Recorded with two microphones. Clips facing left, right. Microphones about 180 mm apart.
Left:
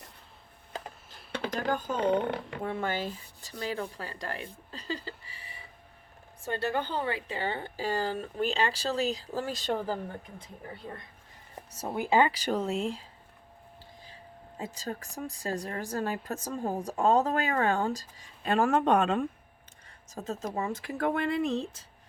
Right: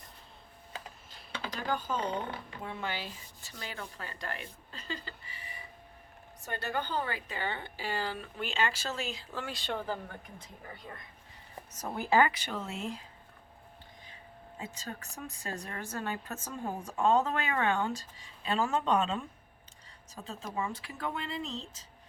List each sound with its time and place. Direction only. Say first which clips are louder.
1.3 s speech: left 5 dB; 55° left (ahead or behind); by 10.0 s 35° left (ahead or behind)
11.9 s speech: left 2 dB; 15° left (ahead or behind)
12.3 s speech: left 9 dB; 35° left (ahead or behind)
14.6 s speech: left 6 dB; 35° left (ahead or behind)
18.4 s a woman's voice: left 5 dB; 55° left (ahead or behind)
20.1 s speech: left 7 dB; 45° left (ahead or behind)